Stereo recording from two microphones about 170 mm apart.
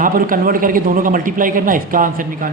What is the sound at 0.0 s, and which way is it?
A man's voice, 55° right (ahead or behind).